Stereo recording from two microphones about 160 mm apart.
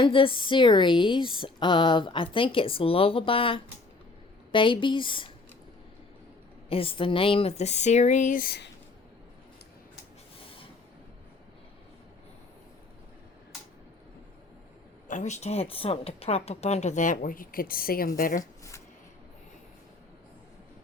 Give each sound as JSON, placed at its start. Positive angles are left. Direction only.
{"t": 0.0, "sound": "speech", "side_deg": 35}
{"t": 6.7, "sound": "speech", "side_deg": 35}
{"t": 15.0, "sound": "speech", "side_deg": 50}
{"t": 18.2, "sound": "speech", "side_deg": 55}